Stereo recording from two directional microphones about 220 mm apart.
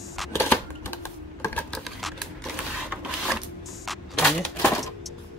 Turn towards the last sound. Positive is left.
turn(degrees=5)  # may be behind; listen again after turning